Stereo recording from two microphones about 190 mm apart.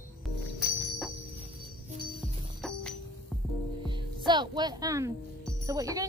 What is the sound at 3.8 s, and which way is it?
Speech, 25° right (ahead or behind).